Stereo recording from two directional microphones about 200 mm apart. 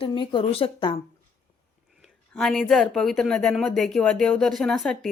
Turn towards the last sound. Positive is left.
turn(degrees=5)  # may be behind; listen again after turning